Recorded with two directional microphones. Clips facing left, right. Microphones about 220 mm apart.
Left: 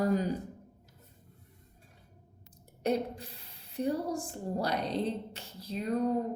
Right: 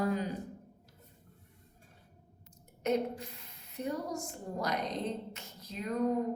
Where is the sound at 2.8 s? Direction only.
35° left (ahead or behind).